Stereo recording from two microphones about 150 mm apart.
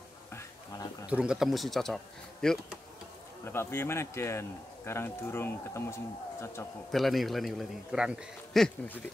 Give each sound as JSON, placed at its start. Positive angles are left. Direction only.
{"t": 0.3, "sound": "a sound", "side_deg": 20}
{"t": 1.0, "sound": "a man's voice", "side_deg": -5}
{"t": 3.4, "sound": "a man's voice", "side_deg": 15}
{"t": 6.9, "sound": "a man's voice", "side_deg": 0}
{"t": 8.6, "sound": "a man's voice", "side_deg": 10}